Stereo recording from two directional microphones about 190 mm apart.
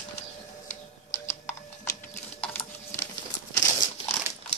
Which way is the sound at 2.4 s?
10° left (ahead or behind).